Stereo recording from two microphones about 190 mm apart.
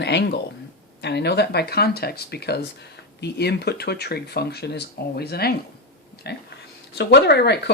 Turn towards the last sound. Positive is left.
turn(degrees=60)  # may be behind; listen again after turning